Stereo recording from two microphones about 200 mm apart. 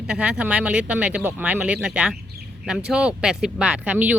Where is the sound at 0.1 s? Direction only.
5° right (ahead or behind).